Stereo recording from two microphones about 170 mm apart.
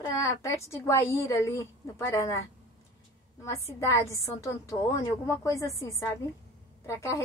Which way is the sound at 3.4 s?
20° left (ahead or behind).